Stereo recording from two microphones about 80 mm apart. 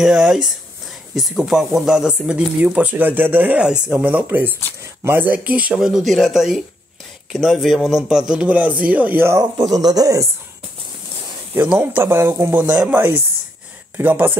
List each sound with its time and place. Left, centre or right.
0.0 s a man's voice: centre
5.9 s a man's voice: centre; by 9.3 s right
9.8 s speech: right
11.6 s speech: centre
12.6 s a man's voice: centre
13.9 s speech: right